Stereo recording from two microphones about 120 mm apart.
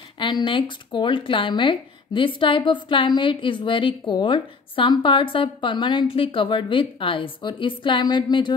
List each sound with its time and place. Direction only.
0.2 s speech: 40° left (ahead or behind)